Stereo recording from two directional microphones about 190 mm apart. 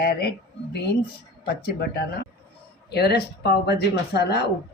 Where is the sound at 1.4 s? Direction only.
55° left (ahead or behind).